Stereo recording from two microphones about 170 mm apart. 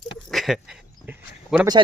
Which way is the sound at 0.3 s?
Centre (ahead or behind).